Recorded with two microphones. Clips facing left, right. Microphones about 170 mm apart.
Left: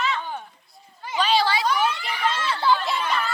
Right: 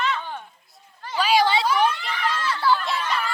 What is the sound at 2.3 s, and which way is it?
Chatter, 25° left (ahead or behind).